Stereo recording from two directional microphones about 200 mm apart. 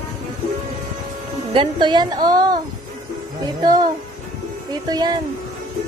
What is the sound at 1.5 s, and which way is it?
Speech, 25° right (ahead or behind).